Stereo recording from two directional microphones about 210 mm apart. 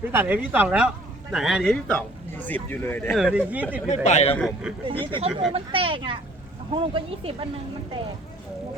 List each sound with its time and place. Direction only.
0.0 s speech: 10° right (ahead or behind); by 3.2 s 10° left (ahead or behind)
3.2 s speech: 5° right (ahead or behind)
3.8 s speech: 30° left (ahead or behind)
4.4 s speech: centre (ahead or behind)
4.9 s speech: 25° right (ahead or behind)